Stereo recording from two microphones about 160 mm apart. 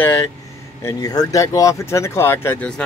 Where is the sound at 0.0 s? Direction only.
15° left (ahead or behind).